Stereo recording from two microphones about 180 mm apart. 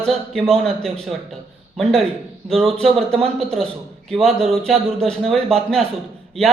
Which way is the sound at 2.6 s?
5° left (ahead or behind).